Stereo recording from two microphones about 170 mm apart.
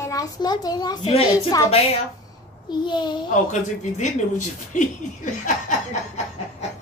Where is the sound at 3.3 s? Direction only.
45° left (ahead or behind).